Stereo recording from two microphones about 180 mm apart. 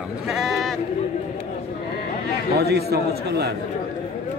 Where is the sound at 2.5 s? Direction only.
65° right (ahead or behind).